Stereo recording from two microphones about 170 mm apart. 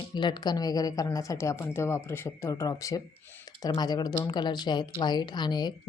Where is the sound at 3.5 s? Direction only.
25° left (ahead or behind).